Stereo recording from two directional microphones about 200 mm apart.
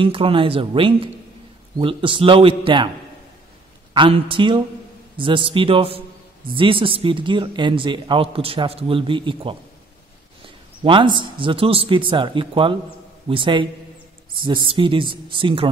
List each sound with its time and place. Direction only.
0.0 s speech: 25° right (ahead or behind)
3.9 s speech: 25° right (ahead or behind)
10.8 s speech: 25° right (ahead or behind)